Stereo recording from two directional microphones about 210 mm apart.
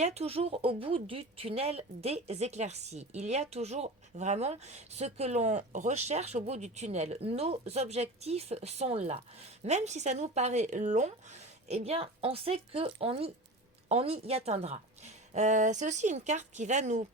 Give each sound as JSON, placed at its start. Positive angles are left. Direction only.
{"t": 0.0, "sound": "speech", "side_deg": -30}